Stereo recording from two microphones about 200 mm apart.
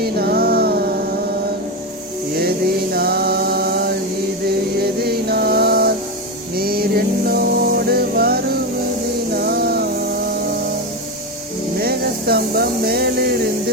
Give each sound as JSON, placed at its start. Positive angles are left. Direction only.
{"t": 0.0, "sound": "music", "side_deg": -50}
{"t": 2.9, "sound": "mantra", "side_deg": -50}
{"t": 6.6, "sound": "music", "side_deg": -50}
{"t": 11.8, "sound": "a sound", "side_deg": -50}